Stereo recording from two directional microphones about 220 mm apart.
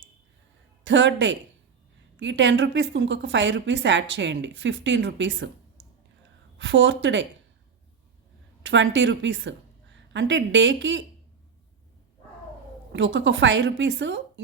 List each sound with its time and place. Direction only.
0.9 s a woman's voice: 55° right (ahead or behind)
6.6 s a woman's voice: 55° right (ahead or behind)
8.6 s a woman's voice: 55° right (ahead or behind)
12.9 s a woman's voice: 55° right (ahead or behind)